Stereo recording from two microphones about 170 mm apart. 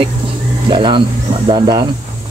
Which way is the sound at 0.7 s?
30° right (ahead or behind).